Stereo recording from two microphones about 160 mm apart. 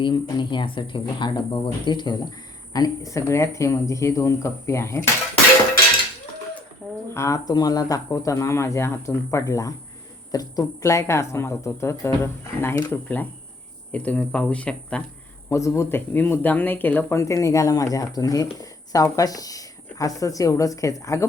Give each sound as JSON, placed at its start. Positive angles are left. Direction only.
{"t": 0.0, "sound": "speech", "side_deg": 30}
{"t": 7.1, "sound": "speech", "side_deg": 20}
{"t": 15.4, "sound": "speech", "side_deg": 20}